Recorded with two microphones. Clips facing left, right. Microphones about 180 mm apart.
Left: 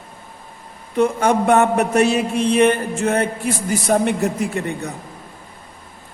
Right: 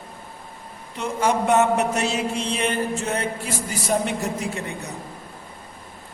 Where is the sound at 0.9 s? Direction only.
55° left (ahead or behind).